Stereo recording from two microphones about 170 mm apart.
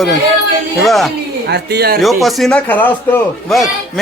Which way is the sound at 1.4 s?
75° right (ahead or behind).